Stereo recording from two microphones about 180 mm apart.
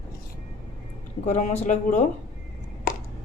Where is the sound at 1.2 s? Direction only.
40° left (ahead or behind).